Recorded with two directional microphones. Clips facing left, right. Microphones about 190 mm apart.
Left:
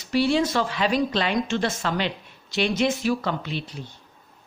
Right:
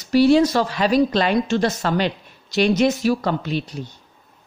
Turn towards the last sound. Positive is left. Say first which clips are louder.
# right 6 dB
turn(degrees=-40)  # may be behind; listen again after turning